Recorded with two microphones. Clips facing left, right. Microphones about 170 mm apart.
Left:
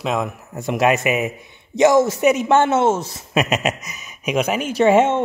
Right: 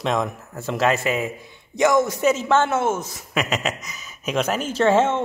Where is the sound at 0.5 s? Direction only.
15° left (ahead or behind).